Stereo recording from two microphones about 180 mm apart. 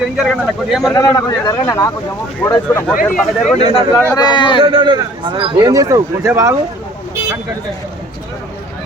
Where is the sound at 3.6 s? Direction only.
25° right (ahead or behind).